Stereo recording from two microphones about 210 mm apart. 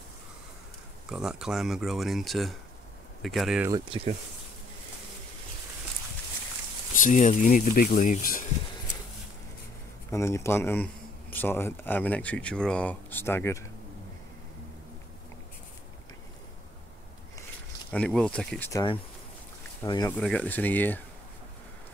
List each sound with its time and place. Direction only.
1.0 s speech: 5° right (ahead or behind)
3.6 s speech: 20° right (ahead or behind)
6.9 s speech: 40° left (ahead or behind)
10.1 s a man's voice: 15° left (ahead or behind)
17.9 s speech: 5° left (ahead or behind)
18.7 s a man's voice: 20° left (ahead or behind)
20.2 s a man's voice: 5° left (ahead or behind)